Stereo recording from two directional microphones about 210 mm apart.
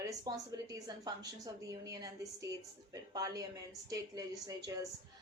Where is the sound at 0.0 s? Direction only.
15° right (ahead or behind).